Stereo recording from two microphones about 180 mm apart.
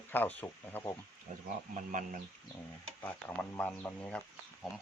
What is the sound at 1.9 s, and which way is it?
Speech, 45° right (ahead or behind).